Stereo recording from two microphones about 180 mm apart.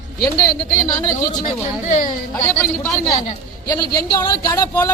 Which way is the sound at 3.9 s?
25° left (ahead or behind).